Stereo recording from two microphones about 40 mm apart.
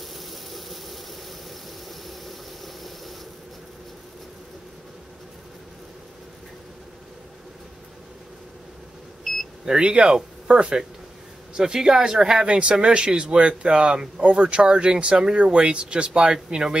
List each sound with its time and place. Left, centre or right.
0.0 s engine: centre
2.0 s engine: centre
9.2 s a sound: centre
9.7 s speech: right